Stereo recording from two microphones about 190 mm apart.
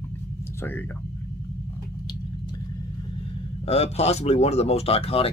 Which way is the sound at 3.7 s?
35° left (ahead or behind).